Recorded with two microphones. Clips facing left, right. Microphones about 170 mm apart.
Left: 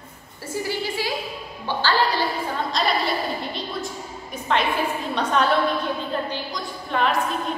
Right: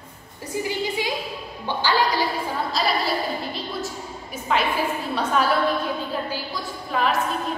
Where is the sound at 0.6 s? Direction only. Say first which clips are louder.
Right 1 dB; 20° right (ahead or behind).